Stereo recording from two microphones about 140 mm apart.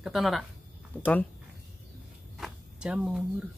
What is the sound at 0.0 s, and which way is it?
Speech, centre (ahead or behind).